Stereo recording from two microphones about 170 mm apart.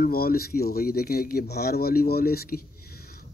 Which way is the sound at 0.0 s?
60° left (ahead or behind).